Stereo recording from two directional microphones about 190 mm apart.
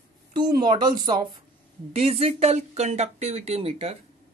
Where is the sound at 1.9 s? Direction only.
30° right (ahead or behind).